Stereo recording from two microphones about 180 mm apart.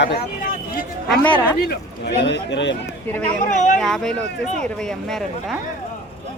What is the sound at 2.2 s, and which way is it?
Speech, 80° left.